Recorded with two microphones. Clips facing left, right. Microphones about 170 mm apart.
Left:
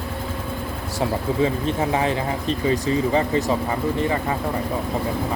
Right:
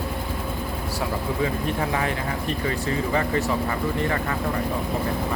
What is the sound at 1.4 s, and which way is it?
Speech, 25° left (ahead or behind).